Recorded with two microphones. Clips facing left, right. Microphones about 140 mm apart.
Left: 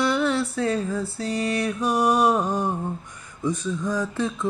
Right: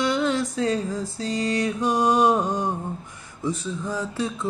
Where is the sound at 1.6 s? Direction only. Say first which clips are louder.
Even; 20° right (ahead or behind).